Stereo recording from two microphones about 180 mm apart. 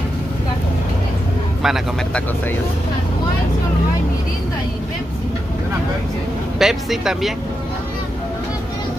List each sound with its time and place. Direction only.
1.6 s speech: centre (ahead or behind)
6.6 s speech: centre (ahead or behind)